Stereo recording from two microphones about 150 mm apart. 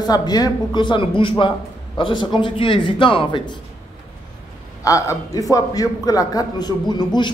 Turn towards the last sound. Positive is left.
turn(degrees=30)  # may be behind; listen again after turning